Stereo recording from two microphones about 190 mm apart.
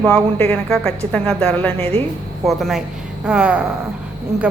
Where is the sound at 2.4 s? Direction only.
Centre (ahead or behind).